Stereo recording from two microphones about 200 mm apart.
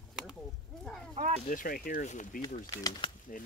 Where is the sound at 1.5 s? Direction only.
45° left (ahead or behind).